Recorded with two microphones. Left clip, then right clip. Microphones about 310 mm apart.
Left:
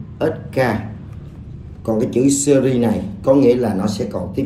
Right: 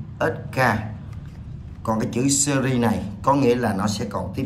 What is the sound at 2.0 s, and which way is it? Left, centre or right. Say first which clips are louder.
Speech: left 9 dB; centre.